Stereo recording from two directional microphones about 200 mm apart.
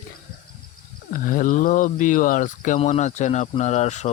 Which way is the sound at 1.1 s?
40° left (ahead or behind).